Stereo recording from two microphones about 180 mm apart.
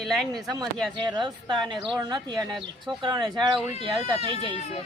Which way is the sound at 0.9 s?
25° right (ahead or behind).